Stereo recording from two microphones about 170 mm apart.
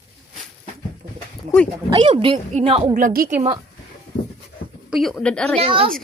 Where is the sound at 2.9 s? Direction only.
55° right (ahead or behind).